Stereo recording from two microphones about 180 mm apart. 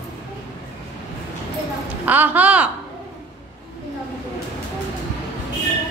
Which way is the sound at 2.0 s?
10° right (ahead or behind).